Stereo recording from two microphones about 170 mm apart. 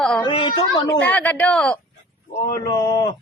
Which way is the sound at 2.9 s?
25° left (ahead or behind).